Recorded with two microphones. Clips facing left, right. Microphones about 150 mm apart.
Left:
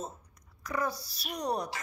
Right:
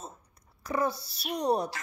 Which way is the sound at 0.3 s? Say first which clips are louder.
Right 4 dB; 30° right (ahead or behind).